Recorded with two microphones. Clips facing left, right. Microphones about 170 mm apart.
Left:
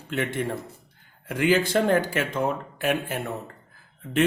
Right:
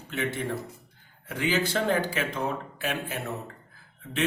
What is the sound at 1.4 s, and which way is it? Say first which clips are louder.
Speech: left 6 dB; 55° left (ahead or behind).